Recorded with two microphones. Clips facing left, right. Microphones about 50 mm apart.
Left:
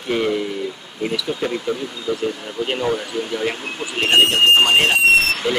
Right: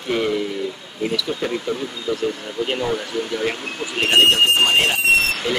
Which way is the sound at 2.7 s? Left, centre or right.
Centre.